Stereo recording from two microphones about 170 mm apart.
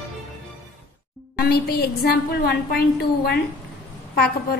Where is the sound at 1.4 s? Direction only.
65° left (ahead or behind).